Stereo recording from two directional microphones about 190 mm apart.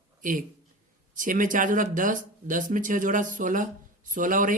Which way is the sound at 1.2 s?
45° right (ahead or behind).